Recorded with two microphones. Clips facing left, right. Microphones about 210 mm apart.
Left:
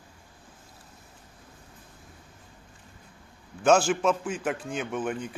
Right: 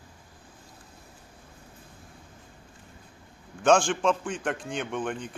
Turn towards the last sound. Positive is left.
turn(degrees=5)  # may be behind; listen again after turning